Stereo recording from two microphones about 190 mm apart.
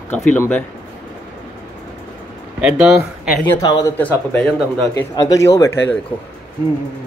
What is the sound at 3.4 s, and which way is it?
Speech, 20° left (ahead or behind).